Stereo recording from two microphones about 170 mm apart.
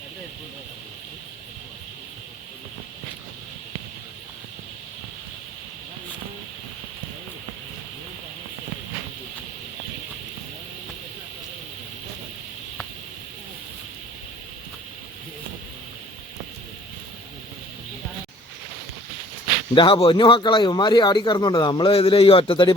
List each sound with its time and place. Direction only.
19.7 s speech: 30° left (ahead or behind)